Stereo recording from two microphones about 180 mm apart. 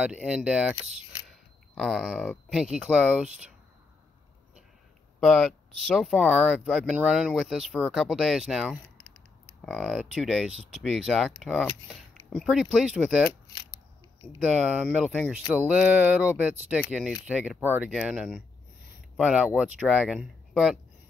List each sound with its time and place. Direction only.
0.0 s speech: 5° right (ahead or behind)
5.2 s speech: centre (ahead or behind)
8.9 s a sound: 45° right (ahead or behind)
9.7 s speech: 5° right (ahead or behind)
14.5 s speech: 5° right (ahead or behind)